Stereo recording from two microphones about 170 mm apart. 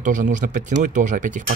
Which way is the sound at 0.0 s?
50° right (ahead or behind).